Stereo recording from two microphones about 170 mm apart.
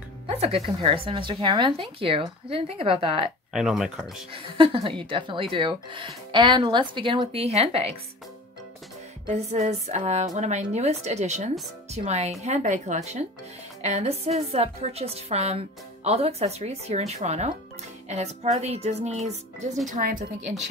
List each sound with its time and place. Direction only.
0.3 s music: 35° right (ahead or behind)
0.8 s a woman's voice: 30° right (ahead or behind)
3.5 s speech: centre (ahead or behind)
4.0 s a woman's voice: 30° right (ahead or behind)
9.5 s a woman's voice: 40° right (ahead or behind)
19.9 s speech: 55° right (ahead or behind)